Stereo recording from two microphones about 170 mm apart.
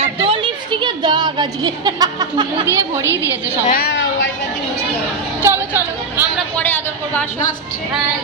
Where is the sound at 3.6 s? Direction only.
65° left (ahead or behind); by 4.2 s 80° left.